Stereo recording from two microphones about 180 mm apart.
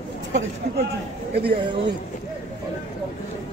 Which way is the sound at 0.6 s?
65° right (ahead or behind).